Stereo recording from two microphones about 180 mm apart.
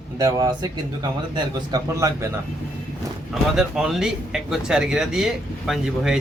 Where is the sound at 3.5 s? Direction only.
Centre (ahead or behind).